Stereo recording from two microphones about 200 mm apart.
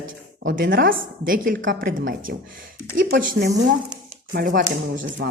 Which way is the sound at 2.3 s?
50° right (ahead or behind).